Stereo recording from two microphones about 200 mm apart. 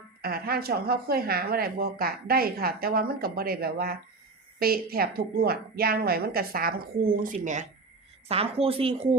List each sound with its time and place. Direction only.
0.2 s speech: 50° right (ahead or behind); by 9.0 s 30° right (ahead or behind)